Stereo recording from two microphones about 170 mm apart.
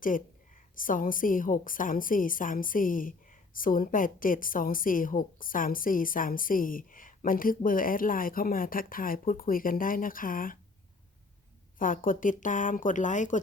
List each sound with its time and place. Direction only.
0.8 s a woman's voice: 55° left (ahead or behind)
11.8 s a woman's voice: 50° left (ahead or behind)